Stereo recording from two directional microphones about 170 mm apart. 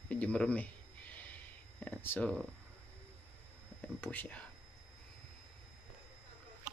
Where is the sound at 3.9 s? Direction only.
10° left (ahead or behind).